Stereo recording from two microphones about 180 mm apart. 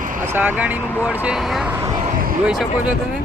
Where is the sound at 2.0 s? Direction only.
50° right (ahead or behind).